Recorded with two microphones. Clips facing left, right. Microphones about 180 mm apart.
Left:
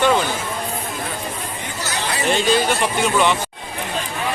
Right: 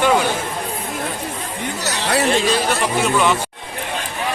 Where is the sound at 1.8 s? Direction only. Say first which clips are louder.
Right 5 dB; 70° right (ahead or behind).